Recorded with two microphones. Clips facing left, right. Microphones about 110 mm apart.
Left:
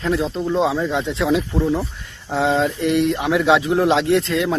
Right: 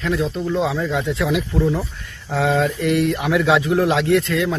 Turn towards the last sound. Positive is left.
turn(degrees=25)  # may be behind; listen again after turning